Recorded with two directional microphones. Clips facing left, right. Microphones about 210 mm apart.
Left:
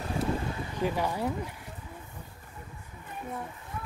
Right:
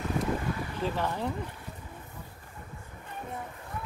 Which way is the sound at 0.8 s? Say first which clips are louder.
Left 2 dB; 10° left (ahead or behind).